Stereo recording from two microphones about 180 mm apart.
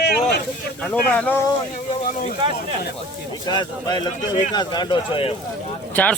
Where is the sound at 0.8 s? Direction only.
5° left (ahead or behind).